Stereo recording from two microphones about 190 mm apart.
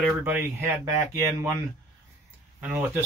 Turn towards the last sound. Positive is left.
turn(degrees=-10)  # may be behind; listen again after turning